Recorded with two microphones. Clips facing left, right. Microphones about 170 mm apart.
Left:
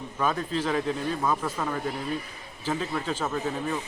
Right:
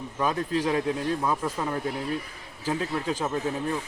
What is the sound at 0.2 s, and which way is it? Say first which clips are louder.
Speech: right 1 dB; 10° right (ahead or behind).